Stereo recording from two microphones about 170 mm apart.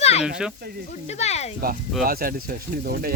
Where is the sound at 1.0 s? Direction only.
40° left (ahead or behind).